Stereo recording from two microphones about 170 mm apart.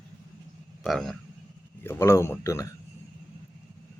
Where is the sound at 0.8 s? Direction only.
Centre (ahead or behind).